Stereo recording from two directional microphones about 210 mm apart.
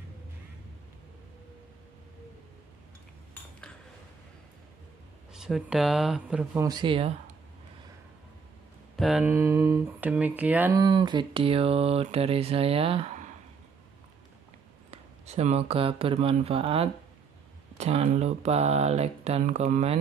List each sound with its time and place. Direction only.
5.3 s speech: 5° right (ahead or behind)
6.7 s speech: 25° right (ahead or behind)
8.9 s speech: centre (ahead or behind); by 13.3 s 30° right (ahead or behind)
14.9 s speech: 30° right (ahead or behind)